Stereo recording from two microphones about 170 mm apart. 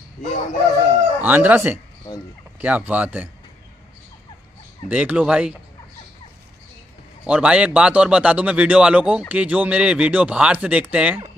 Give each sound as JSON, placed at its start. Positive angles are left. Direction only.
{"t": 0.2, "sound": "crowing", "side_deg": 45}
{"t": 1.2, "sound": "speech", "side_deg": -10}
{"t": 4.8, "sound": "speech", "side_deg": -10}
{"t": 7.2, "sound": "speech", "side_deg": -5}